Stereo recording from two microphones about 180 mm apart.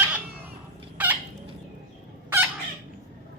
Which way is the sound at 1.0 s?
10° right (ahead or behind).